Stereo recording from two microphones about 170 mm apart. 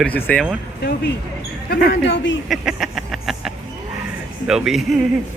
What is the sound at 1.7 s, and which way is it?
Speech, 65° left (ahead or behind).